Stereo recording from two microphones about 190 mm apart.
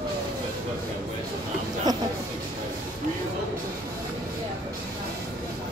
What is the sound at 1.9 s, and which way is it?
Music, 20° right (ahead or behind).